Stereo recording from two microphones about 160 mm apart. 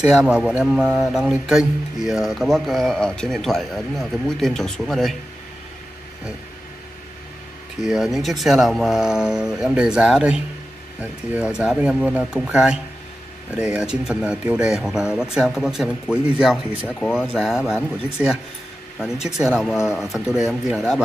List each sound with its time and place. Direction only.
0.0 s speech: 5° right (ahead or behind)
7.8 s speech: 5° right (ahead or behind)
16.8 s speech: 5° left (ahead or behind)